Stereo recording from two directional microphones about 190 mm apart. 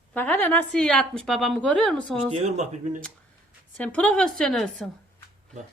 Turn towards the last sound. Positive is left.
turn(degrees=5)  # may be behind; listen again after turning